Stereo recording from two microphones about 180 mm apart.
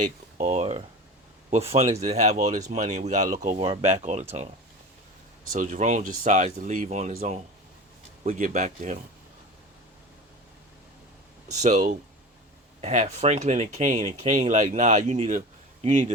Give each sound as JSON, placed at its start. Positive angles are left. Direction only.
{"t": 0.3, "sound": "speech", "side_deg": -40}
{"t": 3.6, "sound": "speech", "side_deg": -30}
{"t": 5.5, "sound": "speech", "side_deg": -45}
{"t": 7.1, "sound": "speech", "side_deg": -55}
{"t": 8.2, "sound": "speech", "side_deg": -45}
{"t": 11.4, "sound": "speech", "side_deg": -40}